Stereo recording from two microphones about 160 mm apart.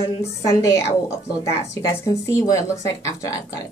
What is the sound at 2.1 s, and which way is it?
Speech, 20° left (ahead or behind).